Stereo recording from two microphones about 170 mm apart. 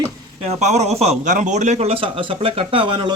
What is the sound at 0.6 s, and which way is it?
Speech, 40° right (ahead or behind).